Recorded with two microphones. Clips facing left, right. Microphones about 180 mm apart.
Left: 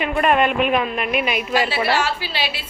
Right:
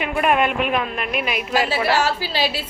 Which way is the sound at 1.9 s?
40° right (ahead or behind).